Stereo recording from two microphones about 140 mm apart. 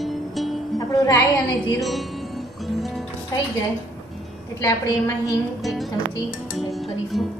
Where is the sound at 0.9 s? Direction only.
25° left (ahead or behind).